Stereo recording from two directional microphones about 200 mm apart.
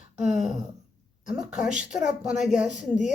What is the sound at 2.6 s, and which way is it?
Speech, 40° left (ahead or behind).